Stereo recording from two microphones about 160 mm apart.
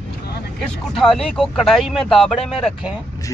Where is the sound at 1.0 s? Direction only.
Centre (ahead or behind).